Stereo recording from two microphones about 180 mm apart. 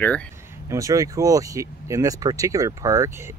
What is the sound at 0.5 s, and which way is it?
Speech, 15° right (ahead or behind).